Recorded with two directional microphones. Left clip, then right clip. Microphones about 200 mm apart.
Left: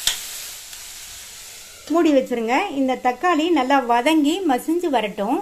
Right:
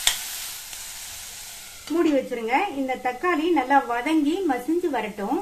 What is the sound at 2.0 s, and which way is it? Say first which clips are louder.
A woman's voice: left 5 dB; 45° left (ahead or behind).